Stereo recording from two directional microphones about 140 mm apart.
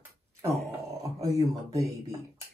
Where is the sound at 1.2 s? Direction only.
25° right (ahead or behind).